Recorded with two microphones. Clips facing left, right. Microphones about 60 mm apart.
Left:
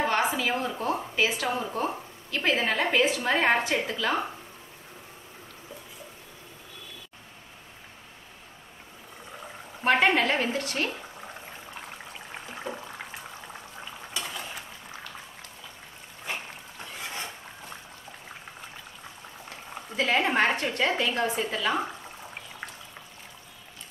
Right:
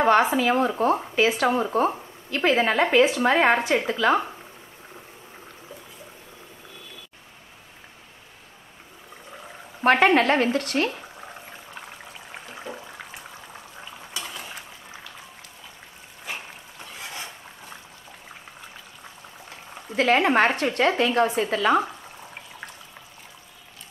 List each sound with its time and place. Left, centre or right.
0.0 s a woman's voice: right
9.8 s a woman's voice: right
12.4 s a sound: centre
13.5 s boiling: centre
20.0 s a woman's voice: right